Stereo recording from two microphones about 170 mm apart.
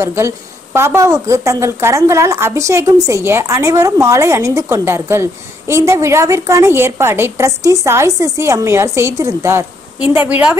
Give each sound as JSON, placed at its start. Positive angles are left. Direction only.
{"t": 0.0, "sound": "a woman's voice", "side_deg": -15}